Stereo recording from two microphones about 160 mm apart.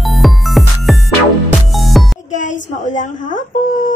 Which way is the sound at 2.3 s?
50° left (ahead or behind).